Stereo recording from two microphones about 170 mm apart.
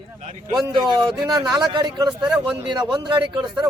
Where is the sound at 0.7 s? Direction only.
25° right (ahead or behind).